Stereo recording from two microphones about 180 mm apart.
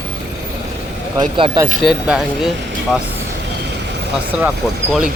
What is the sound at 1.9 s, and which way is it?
Speech, centre (ahead or behind).